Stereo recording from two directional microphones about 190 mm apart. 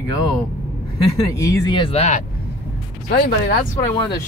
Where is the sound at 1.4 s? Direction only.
20° left (ahead or behind); by 2.2 s 35° left (ahead or behind).